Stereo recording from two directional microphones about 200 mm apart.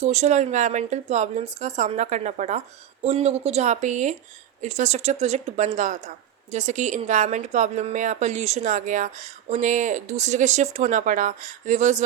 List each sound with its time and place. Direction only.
0.0 s a woman's voice: 35° right (ahead or behind)